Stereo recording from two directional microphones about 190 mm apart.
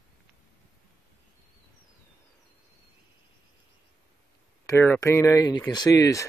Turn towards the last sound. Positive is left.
turn(degrees=15)  # may be behind; listen again after turning